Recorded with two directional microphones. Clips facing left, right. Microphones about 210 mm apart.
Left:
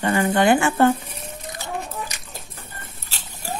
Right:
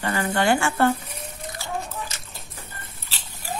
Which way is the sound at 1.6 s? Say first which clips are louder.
Left 1 dB; 15° left (ahead or behind).